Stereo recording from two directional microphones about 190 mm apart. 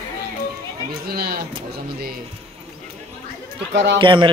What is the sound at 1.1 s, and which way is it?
Speech, 55° right (ahead or behind).